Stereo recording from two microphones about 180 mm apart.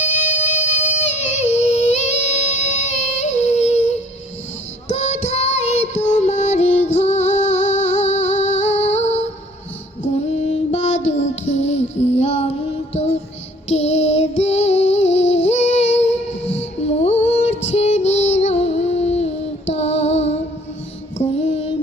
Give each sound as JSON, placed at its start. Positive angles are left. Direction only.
{"t": 1.2, "sound": "music", "side_deg": 40}
{"t": 4.9, "sound": "music", "side_deg": 40}
{"t": 10.0, "sound": "female singing", "side_deg": 35}
{"t": 11.5, "sound": "music", "side_deg": 40}
{"t": 13.7, "sound": "child singing", "side_deg": 35}
{"t": 16.6, "sound": "music", "side_deg": 35}
{"t": 21.2, "sound": "female singing", "side_deg": 35}